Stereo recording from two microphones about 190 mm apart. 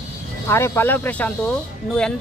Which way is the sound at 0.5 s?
10° left (ahead or behind).